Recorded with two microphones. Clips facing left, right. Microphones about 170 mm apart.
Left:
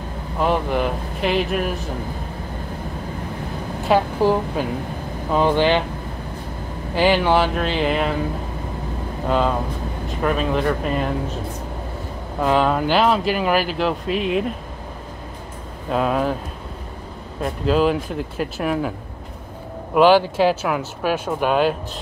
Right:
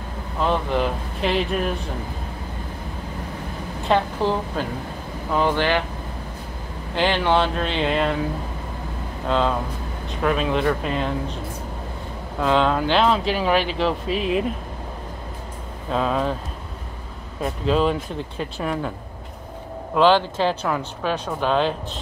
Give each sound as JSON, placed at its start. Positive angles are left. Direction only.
{"t": 0.4, "sound": "speech", "side_deg": 15}
{"t": 3.9, "sound": "speech", "side_deg": 10}
{"t": 7.0, "sound": "speech", "side_deg": 5}
{"t": 10.0, "sound": "speech", "side_deg": 0}
{"t": 12.4, "sound": "speech", "side_deg": 5}
{"t": 15.9, "sound": "speech", "side_deg": 5}
{"t": 17.4, "sound": "speech", "side_deg": 0}
{"t": 19.9, "sound": "speech", "side_deg": 10}